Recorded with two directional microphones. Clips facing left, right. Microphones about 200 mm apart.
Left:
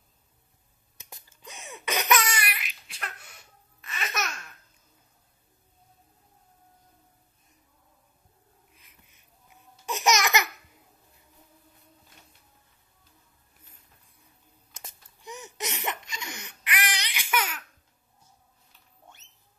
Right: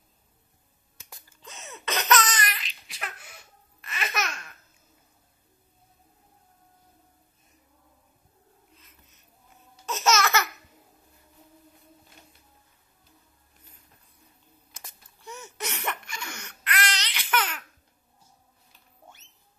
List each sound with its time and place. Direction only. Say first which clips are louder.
1.3 s laughter: even; 15° left (ahead or behind)
3.8 s babbling: right 2 dB; centre (ahead or behind)
8.7 s babbling: right 3 dB; 15° left (ahead or behind)
14.7 s laughter: left 2 dB; 20° left (ahead or behind)